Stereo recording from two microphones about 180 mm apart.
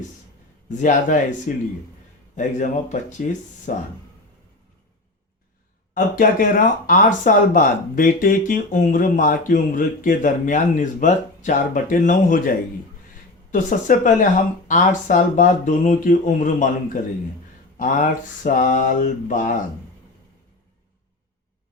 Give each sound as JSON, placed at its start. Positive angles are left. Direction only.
{"t": 0.7, "sound": "speech", "side_deg": 45}
{"t": 5.9, "sound": "speech", "side_deg": 50}